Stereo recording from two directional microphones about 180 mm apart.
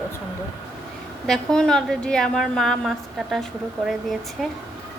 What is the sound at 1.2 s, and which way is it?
A woman's voice, 5° left (ahead or behind).